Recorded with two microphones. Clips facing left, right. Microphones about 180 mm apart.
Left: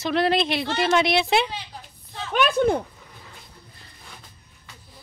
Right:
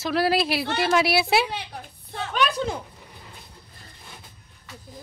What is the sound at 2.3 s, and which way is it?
Speech, 50° left (ahead or behind).